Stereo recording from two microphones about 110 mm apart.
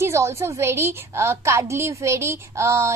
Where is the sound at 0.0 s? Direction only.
25° right (ahead or behind).